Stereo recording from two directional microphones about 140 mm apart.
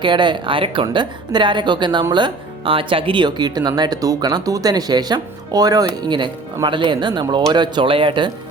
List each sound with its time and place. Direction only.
0.0 s a woman's voice: 35° right (ahead or behind)